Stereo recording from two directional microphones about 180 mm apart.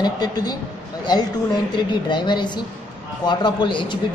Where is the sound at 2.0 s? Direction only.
25° left (ahead or behind).